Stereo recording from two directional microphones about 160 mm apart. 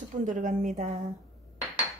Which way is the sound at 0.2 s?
55° right (ahead or behind).